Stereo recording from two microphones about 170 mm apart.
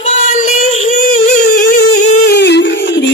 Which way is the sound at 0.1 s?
45° left (ahead or behind).